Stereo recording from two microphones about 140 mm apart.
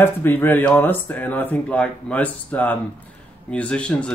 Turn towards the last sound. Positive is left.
turn(degrees=10)  # may be behind; listen again after turning